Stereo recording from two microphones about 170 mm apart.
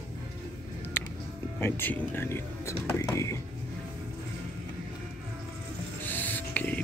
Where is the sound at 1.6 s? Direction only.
10° left (ahead or behind).